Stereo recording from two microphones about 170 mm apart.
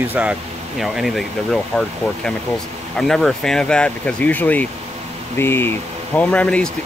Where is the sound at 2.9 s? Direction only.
Centre (ahead or behind).